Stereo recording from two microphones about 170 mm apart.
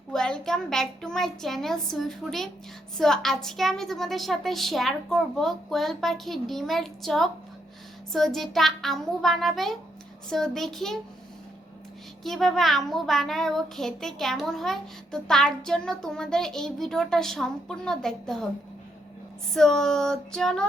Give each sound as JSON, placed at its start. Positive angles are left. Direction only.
{"t": 0.1, "sound": "a child's voice", "side_deg": 5}
{"t": 12.2, "sound": "a child's voice", "side_deg": 0}
{"t": 19.5, "sound": "a child's voice", "side_deg": 0}